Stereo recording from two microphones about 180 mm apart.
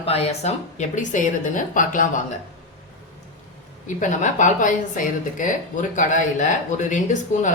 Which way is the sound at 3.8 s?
45° left (ahead or behind).